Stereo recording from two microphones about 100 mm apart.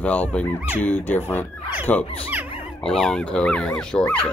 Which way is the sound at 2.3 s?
15° right (ahead or behind).